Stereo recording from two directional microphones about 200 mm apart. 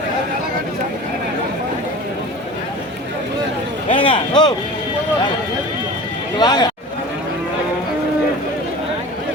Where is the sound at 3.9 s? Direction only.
25° left (ahead or behind).